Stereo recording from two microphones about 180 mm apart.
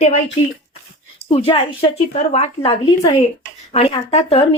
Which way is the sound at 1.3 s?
30° left (ahead or behind).